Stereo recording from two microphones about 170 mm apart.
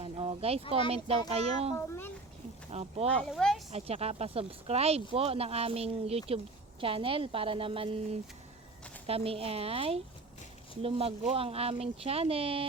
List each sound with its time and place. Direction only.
0.0 s a sound: 30° right (ahead or behind)
0.9 s speech: 35° right (ahead or behind)
3.3 s speech: centre (ahead or behind)
3.7 s speech: 35° right (ahead or behind)